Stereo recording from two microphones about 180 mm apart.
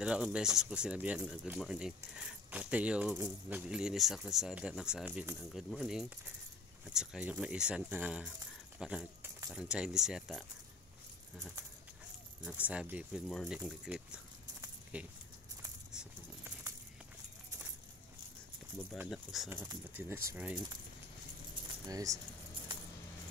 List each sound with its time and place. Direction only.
0.0 s speech: 5° right (ahead or behind)
12.4 s speech: 10° right (ahead or behind)
18.9 s speech: centre (ahead or behind)
19.5 s speech: 10° right (ahead or behind)
21.8 s speech: 20° right (ahead or behind)
22.7 s coin: 25° right (ahead or behind)